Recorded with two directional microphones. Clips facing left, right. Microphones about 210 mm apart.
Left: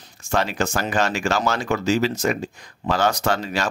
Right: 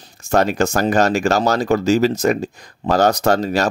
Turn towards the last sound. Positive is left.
turn(degrees=-40)  # may be behind; listen again after turning